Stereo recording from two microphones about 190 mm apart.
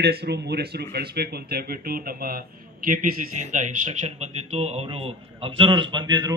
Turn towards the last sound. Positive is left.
turn(degrees=-25)  # may be behind; listen again after turning